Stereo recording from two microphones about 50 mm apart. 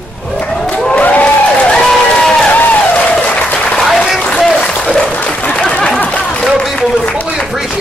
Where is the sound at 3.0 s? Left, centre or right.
Left.